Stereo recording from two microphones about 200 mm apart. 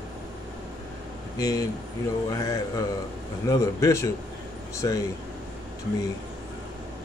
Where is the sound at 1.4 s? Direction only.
15° left (ahead or behind).